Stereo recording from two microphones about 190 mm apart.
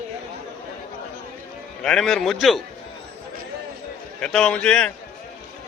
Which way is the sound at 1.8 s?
5° left (ahead or behind).